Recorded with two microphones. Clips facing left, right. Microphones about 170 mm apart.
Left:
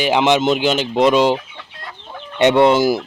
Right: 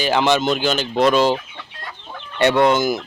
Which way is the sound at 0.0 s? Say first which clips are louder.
Left 2 dB; 20° left (ahead or behind).